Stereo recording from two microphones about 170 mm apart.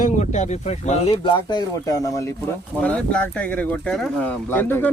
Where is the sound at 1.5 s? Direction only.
20° left (ahead or behind).